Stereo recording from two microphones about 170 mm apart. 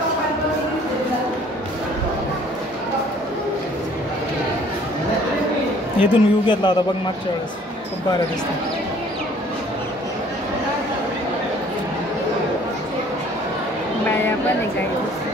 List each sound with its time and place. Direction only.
5.9 s a woman's voice: 30° left (ahead or behind)